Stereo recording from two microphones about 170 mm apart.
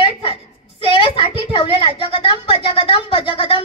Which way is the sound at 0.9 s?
30° left (ahead or behind).